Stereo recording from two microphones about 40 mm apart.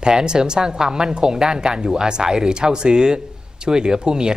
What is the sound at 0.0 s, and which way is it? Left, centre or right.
Speech, centre.